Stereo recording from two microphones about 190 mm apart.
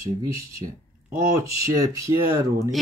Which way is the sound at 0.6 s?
25° right (ahead or behind).